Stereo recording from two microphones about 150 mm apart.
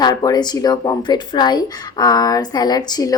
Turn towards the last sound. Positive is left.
turn(degrees=25)  # may be behind; listen again after turning